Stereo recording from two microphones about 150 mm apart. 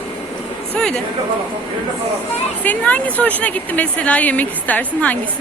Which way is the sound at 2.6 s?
10° left (ahead or behind).